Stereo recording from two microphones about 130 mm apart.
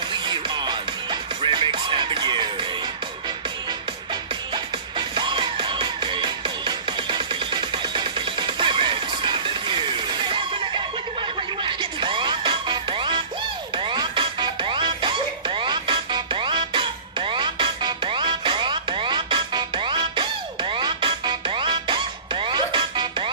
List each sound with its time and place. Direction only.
0.3 s music: 35° right (ahead or behind)
4.9 s music: 35° right (ahead or behind)